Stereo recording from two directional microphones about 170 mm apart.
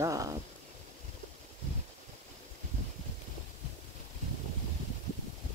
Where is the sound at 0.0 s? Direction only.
20° right (ahead or behind).